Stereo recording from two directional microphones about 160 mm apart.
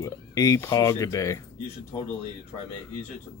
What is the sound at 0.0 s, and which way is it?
Speech, 20° left (ahead or behind).